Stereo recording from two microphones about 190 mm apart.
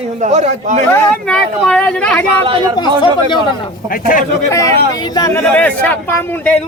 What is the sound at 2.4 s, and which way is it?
Speech, 25° right (ahead or behind).